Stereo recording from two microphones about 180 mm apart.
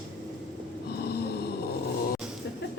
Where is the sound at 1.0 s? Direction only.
65° left (ahead or behind).